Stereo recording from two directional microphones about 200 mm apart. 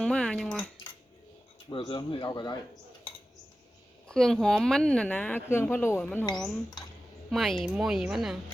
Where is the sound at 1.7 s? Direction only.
25° left (ahead or behind).